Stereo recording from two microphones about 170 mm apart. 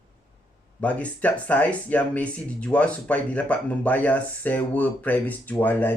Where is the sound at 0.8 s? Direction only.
10° left (ahead or behind).